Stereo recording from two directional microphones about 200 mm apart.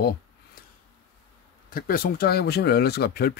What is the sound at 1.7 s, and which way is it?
Speech, 45° left (ahead or behind).